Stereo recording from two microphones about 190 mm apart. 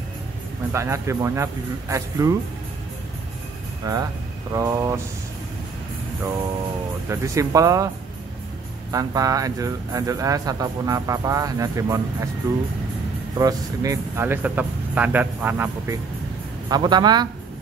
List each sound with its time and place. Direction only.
0.7 s speech: 15° right (ahead or behind)
3.8 s speech: 20° right (ahead or behind)
7.1 s speech: 15° right (ahead or behind)
8.9 s speech: 20° right (ahead or behind)
13.4 s speech: 20° right (ahead or behind)
16.6 s speech: 20° right (ahead or behind)